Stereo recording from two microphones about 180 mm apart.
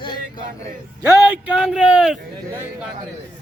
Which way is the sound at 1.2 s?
5° right (ahead or behind).